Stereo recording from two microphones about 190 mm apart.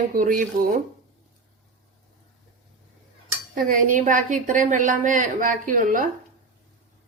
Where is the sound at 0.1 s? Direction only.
45° right (ahead or behind).